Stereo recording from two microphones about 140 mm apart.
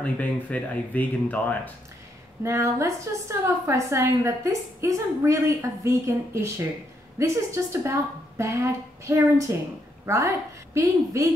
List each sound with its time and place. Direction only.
0.0 s speech: 10° left (ahead or behind)
2.4 s a woman's voice: 20° right (ahead or behind)